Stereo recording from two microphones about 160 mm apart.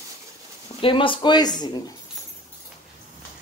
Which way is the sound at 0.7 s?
30° left (ahead or behind).